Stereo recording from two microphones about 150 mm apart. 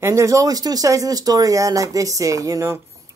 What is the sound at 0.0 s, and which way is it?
Speech, 20° right (ahead or behind).